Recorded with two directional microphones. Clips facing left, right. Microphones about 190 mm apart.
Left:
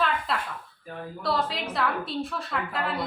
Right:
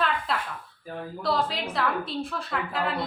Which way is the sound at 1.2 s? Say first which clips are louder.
Right 1 dB; centre (ahead or behind).